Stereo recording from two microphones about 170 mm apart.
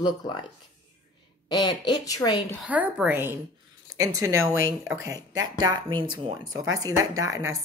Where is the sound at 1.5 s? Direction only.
25° left (ahead or behind).